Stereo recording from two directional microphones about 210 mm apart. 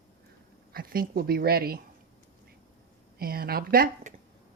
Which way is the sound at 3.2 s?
45° right (ahead or behind).